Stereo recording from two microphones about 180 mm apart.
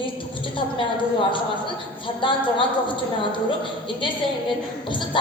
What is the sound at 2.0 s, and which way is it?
A woman's voice, 25° left (ahead or behind).